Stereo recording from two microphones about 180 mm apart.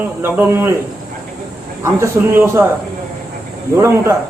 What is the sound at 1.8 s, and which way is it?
Speech, 15° right (ahead or behind).